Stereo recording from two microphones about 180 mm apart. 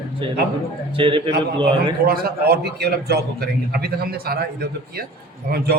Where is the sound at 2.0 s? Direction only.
60° right (ahead or behind).